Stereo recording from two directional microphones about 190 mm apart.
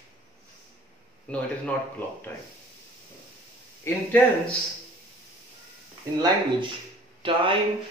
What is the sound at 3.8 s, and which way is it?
Speech, 10° left (ahead or behind).